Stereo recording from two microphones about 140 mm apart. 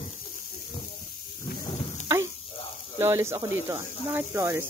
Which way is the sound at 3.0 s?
20° right (ahead or behind).